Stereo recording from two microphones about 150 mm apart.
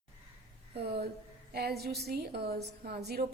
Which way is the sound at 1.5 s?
90° right.